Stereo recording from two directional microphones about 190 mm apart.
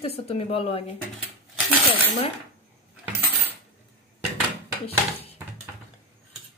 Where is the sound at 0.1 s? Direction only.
30° left (ahead or behind).